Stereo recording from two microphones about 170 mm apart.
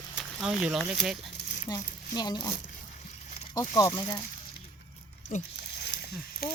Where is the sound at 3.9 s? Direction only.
25° left (ahead or behind).